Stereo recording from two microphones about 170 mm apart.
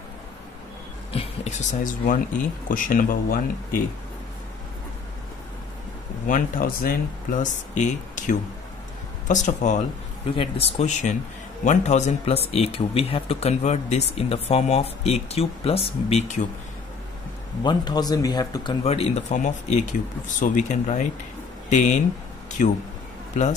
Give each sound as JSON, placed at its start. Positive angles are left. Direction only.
{"t": 1.1, "sound": "speech", "side_deg": 40}
{"t": 6.2, "sound": "speech", "side_deg": 50}
{"t": 7.7, "sound": "speech", "side_deg": 45}
{"t": 10.3, "sound": "speech", "side_deg": 35}
{"t": 17.6, "sound": "speech", "side_deg": 25}
{"t": 18.9, "sound": "speech", "side_deg": 40}